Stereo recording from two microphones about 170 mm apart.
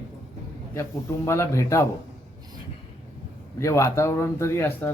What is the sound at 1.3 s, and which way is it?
Speech, 15° left (ahead or behind).